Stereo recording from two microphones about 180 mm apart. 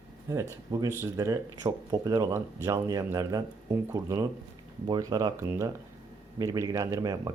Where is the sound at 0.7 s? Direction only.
20° right (ahead or behind).